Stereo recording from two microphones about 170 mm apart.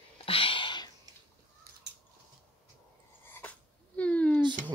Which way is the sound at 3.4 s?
10° left (ahead or behind).